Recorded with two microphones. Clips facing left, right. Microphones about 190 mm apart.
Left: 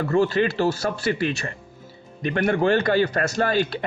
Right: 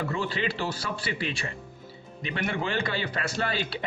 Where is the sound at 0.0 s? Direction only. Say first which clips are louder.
Left 10 dB; 45° left (ahead or behind).